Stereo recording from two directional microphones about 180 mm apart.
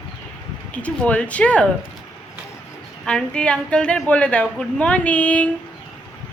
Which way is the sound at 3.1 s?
5° left (ahead or behind).